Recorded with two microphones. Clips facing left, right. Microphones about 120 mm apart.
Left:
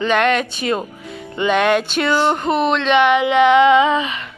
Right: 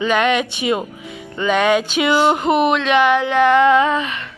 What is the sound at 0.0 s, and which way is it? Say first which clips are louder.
Speech: even; 5° right (ahead or behind).